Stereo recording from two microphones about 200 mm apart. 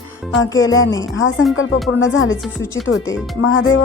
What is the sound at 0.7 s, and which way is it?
Speech, 75° left (ahead or behind).